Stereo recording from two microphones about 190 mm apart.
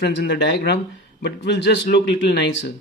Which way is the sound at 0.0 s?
65° left (ahead or behind).